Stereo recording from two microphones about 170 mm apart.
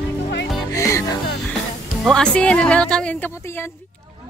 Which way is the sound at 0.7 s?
15° left (ahead or behind).